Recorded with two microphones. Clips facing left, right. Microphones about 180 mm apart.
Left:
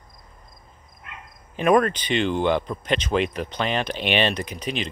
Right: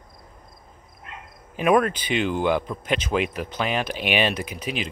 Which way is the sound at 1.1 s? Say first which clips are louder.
Right 1 dB; 35° right (ahead or behind).